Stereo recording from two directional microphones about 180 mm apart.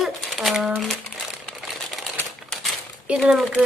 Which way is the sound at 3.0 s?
5° right (ahead or behind).